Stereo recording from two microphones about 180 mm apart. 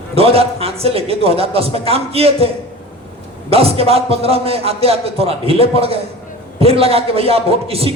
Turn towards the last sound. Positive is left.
turn(degrees=-35)  # may be behind; listen again after turning